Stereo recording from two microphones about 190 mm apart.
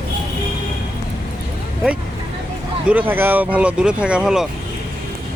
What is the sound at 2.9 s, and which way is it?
Speech, 10° right (ahead or behind).